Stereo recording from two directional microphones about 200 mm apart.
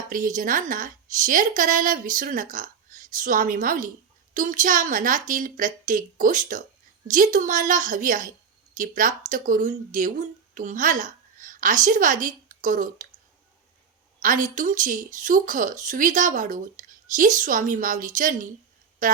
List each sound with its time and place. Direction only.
0.1 s speech: 40° right (ahead or behind)
14.2 s speech: 40° right (ahead or behind)